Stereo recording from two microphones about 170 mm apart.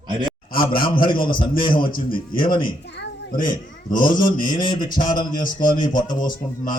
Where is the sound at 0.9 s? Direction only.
30° left (ahead or behind).